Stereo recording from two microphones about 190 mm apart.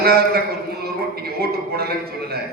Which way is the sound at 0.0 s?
55° right (ahead or behind).